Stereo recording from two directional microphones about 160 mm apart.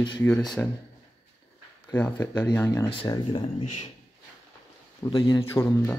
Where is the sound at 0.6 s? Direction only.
10° left (ahead or behind).